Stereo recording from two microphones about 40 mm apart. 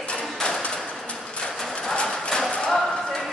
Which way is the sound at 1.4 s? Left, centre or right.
Centre.